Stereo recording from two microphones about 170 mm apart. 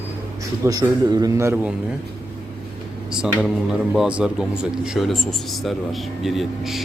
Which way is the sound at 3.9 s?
5° right (ahead or behind).